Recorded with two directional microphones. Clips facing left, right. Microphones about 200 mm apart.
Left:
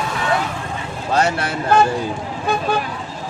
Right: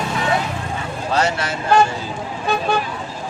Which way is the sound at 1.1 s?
55° left (ahead or behind).